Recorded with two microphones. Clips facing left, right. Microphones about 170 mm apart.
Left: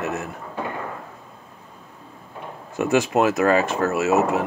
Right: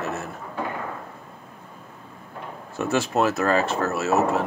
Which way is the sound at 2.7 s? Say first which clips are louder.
Left 4 dB; 15° left (ahead or behind).